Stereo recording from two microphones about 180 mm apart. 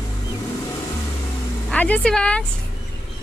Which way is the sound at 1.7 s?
5° left (ahead or behind).